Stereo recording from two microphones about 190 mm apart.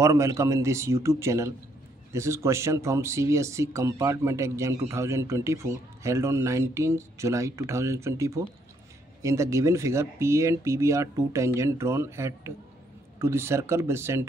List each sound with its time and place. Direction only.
0.0 s speech: 15° right (ahead or behind)